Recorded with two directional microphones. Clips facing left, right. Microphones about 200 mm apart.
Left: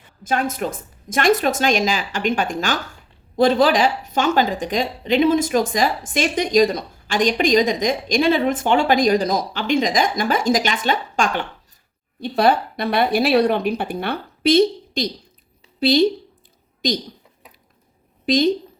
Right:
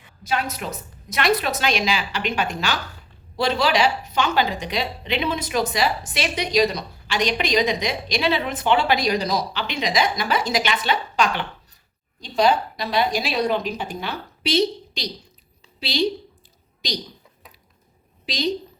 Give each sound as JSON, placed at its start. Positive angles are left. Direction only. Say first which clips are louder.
{"t": 0.2, "sound": "speech", "louder": "left 4 dB", "side_deg": 50}
{"t": 12.2, "sound": "speech", "louder": "left 2 dB", "side_deg": 55}
{"t": 18.3, "sound": "speech", "louder": "left 8 dB", "side_deg": 50}